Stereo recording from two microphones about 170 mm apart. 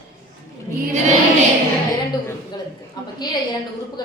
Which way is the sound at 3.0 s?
20° left (ahead or behind).